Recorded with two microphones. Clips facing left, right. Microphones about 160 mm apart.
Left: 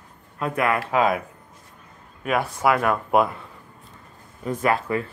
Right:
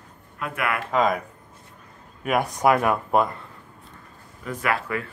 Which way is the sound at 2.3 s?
15° right (ahead or behind).